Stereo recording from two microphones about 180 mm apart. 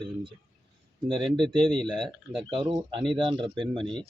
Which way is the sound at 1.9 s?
25° right (ahead or behind).